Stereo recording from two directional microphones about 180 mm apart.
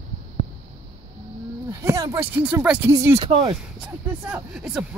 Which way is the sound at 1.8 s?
20° right (ahead or behind).